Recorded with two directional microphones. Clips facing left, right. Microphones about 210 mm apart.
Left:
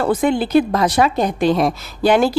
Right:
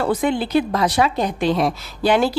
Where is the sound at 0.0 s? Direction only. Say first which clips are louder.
Left 3 dB; 45° left (ahead or behind).